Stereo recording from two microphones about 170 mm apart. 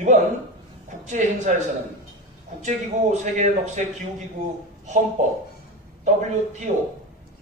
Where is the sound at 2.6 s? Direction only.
45° right (ahead or behind).